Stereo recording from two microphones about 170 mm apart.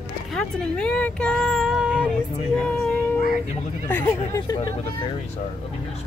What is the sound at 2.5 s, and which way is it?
Music, 5° left (ahead or behind).